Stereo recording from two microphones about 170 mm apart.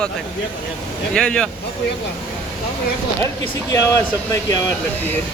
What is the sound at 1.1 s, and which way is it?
Speech, 5° left (ahead or behind).